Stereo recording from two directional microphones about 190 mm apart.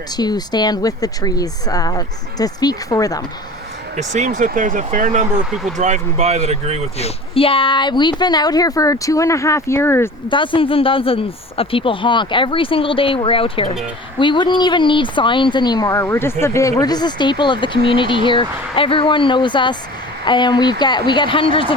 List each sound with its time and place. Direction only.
0.2 s speech: 20° left (ahead or behind)
3.9 s speech: 40° right (ahead or behind)
7.0 s speech: 30° left (ahead or behind); by 10.1 s 15° left (ahead or behind)
10.2 s speech: 25° left (ahead or behind)